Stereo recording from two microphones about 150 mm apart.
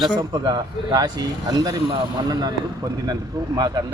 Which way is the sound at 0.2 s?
30° right (ahead or behind).